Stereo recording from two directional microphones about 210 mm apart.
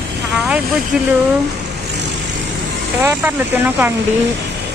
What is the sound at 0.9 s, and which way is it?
Speech, 5° right (ahead or behind).